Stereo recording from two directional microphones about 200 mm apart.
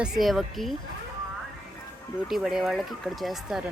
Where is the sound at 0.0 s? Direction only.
Centre (ahead or behind).